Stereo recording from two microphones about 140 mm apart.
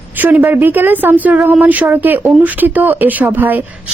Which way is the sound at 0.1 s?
10° right (ahead or behind).